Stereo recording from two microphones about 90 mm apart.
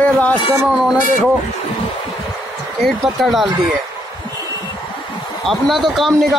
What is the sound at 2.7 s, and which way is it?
Speech, centre (ahead or behind).